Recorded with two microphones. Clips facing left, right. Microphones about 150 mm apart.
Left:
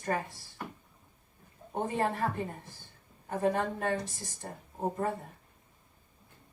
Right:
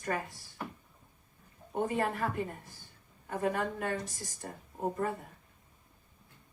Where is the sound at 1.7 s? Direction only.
30° left (ahead or behind).